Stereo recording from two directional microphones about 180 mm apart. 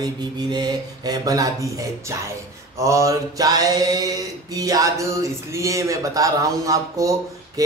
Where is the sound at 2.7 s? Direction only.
15° right (ahead or behind).